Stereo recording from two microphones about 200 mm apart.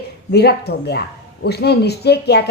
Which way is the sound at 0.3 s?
55° left (ahead or behind).